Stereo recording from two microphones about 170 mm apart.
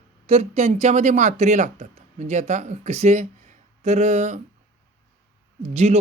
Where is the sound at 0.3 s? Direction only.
35° right (ahead or behind).